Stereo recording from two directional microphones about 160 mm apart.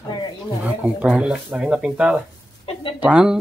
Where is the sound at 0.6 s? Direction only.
10° right (ahead or behind).